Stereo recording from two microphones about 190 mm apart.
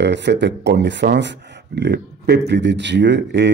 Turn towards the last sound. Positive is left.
turn(degrees=-65)  # may be behind; listen again after turning